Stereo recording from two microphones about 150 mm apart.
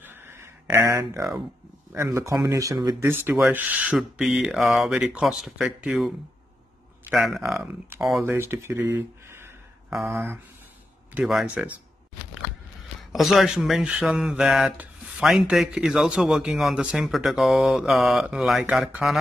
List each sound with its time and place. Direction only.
0.0 s a sound: 15° right (ahead or behind)
1.9 s speech: 20° right (ahead or behind); by 7.5 s centre (ahead or behind)
7.5 s speech: 15° right (ahead or behind)
11.1 s speech: 5° right (ahead or behind)
13.1 s speech: centre (ahead or behind)